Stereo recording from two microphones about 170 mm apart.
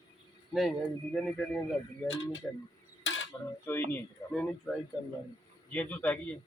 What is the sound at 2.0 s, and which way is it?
Speech, 90° left.